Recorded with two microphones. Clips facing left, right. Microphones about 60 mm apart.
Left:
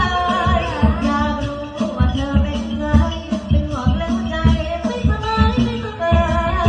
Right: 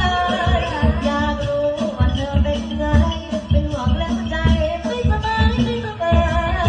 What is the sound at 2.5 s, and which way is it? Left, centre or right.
Music, left.